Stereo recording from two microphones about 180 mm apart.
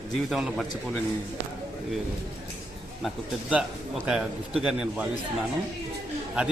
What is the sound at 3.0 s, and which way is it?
A man's voice, 5° right (ahead or behind).